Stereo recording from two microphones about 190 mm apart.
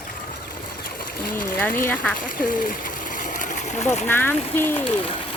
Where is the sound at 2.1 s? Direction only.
45° left (ahead or behind).